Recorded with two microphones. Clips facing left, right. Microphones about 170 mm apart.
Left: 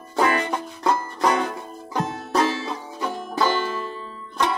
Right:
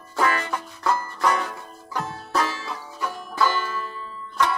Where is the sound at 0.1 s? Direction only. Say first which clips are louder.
Left 3 dB; 20° left (ahead or behind).